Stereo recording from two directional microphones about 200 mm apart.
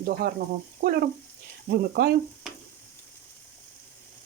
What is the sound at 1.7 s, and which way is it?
Speech, 50° right (ahead or behind).